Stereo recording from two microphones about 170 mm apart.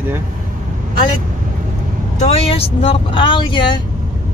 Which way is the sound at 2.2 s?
35° left (ahead or behind).